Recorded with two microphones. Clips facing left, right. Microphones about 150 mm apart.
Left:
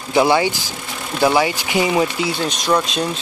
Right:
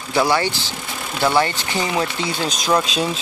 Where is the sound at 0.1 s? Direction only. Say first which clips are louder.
Left 3 dB; 20° left (ahead or behind).